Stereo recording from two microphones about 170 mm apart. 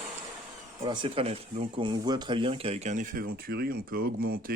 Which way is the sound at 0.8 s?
25° right (ahead or behind).